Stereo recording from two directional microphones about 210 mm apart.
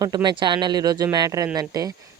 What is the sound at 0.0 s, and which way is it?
Speech, 20° right (ahead or behind).